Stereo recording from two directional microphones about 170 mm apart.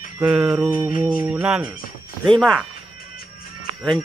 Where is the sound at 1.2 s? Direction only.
5° right (ahead or behind).